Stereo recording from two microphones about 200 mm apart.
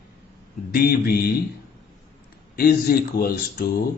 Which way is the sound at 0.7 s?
50° left (ahead or behind).